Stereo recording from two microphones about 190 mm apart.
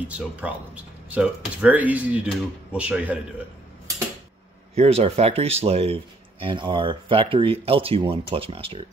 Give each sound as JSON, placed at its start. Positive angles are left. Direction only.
{"t": 0.2, "sound": "speech", "side_deg": -5}
{"t": 4.7, "sound": "speech", "side_deg": -35}